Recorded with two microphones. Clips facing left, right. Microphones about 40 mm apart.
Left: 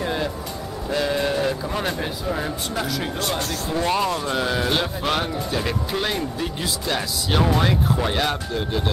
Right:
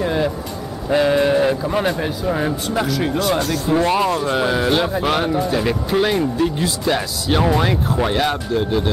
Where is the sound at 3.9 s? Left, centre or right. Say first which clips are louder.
Right 4 dB; centre.